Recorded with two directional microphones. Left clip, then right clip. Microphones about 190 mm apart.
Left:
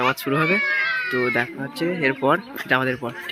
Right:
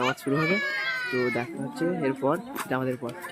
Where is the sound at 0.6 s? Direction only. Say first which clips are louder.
Left 7 dB; 55° right (ahead or behind).